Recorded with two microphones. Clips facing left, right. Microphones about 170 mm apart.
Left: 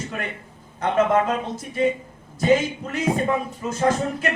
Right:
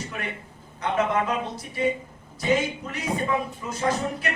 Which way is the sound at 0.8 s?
50° left (ahead or behind).